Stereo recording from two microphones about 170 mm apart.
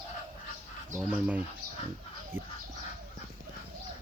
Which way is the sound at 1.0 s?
5° right (ahead or behind).